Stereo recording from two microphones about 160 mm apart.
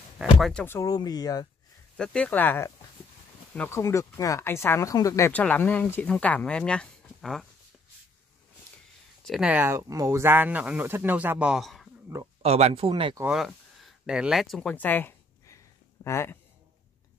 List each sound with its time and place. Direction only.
0.2 s speech: centre (ahead or behind)
0.7 s speech: 20° left (ahead or behind)
2.0 s speech: 10° left (ahead or behind)
9.2 s speech: centre (ahead or behind)
12.4 s speech: 40° right (ahead or behind)
13.3 s speech: centre (ahead or behind)
14.0 s a sound: 5° right (ahead or behind); by 16.3 s 15° left (ahead or behind)